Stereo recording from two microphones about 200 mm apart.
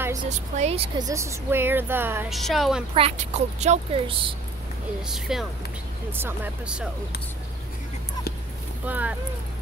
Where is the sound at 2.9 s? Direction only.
30° right (ahead or behind).